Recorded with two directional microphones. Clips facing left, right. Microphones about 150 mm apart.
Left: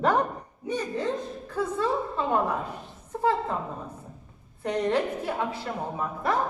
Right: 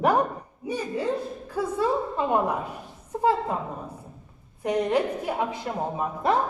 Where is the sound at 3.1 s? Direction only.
15° right (ahead or behind).